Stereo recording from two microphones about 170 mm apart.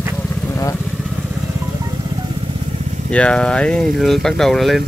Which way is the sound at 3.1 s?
5° left (ahead or behind).